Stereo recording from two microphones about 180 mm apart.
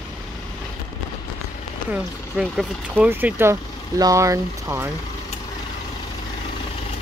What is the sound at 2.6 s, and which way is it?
Speech, 10° right (ahead or behind).